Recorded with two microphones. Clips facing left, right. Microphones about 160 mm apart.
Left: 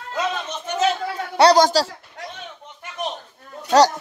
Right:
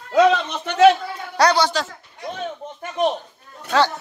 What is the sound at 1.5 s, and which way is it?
Speech, 40° left (ahead or behind).